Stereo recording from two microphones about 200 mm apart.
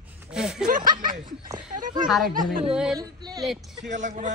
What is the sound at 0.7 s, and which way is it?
Speech, 45° right (ahead or behind).